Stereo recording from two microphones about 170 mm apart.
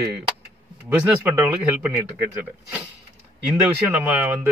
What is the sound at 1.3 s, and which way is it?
Speech, 10° right (ahead or behind).